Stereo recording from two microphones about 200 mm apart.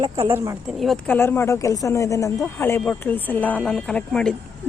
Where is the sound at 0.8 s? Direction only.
5° left (ahead or behind).